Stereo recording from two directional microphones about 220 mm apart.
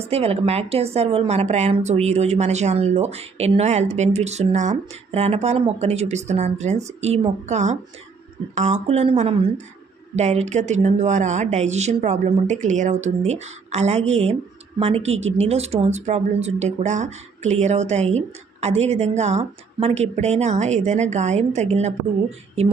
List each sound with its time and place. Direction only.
0.0 s a woman's voice: 25° right (ahead or behind)